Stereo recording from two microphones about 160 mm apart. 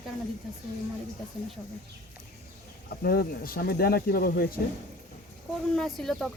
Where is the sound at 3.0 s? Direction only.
70° left (ahead or behind).